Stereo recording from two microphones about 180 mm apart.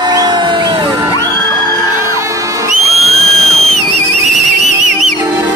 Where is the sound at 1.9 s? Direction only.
15° right (ahead or behind).